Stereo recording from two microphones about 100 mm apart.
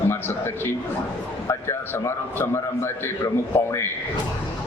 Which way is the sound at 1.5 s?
25° left (ahead or behind).